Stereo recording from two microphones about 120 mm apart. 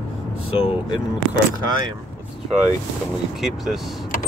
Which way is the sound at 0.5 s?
50° left (ahead or behind).